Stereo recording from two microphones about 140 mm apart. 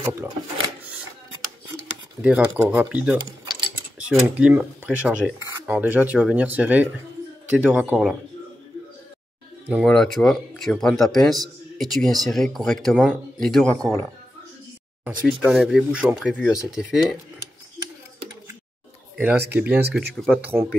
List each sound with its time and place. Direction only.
2.2 s speech: 10° right (ahead or behind)
5.4 s cutlery: 25° right (ahead or behind)
5.7 s speech: 10° right (ahead or behind)
9.8 s a man's voice: centre (ahead or behind)
15.2 s a man's voice: centre (ahead or behind)
19.1 s a man's voice: 15° right (ahead or behind)